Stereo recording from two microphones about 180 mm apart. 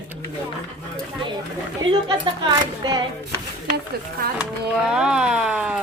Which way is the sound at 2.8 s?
25° right (ahead or behind).